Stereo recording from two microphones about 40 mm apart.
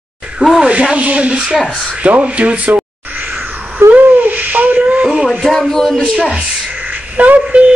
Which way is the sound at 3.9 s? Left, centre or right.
Right.